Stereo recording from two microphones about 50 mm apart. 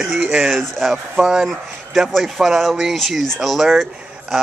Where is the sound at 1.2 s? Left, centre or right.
Centre.